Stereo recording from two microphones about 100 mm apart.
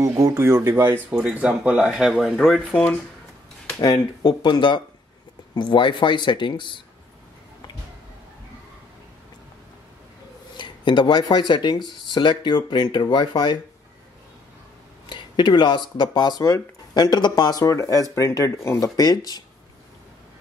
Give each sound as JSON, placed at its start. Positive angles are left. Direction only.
{"t": 0.0, "sound": "speech", "side_deg": -30}
{"t": 1.1, "sound": "speech", "side_deg": -10}
{"t": 2.7, "sound": "speech", "side_deg": 20}
{"t": 3.8, "sound": "speech", "side_deg": 45}
{"t": 10.6, "sound": "speech", "side_deg": 55}
{"t": 15.0, "sound": "speech", "side_deg": 50}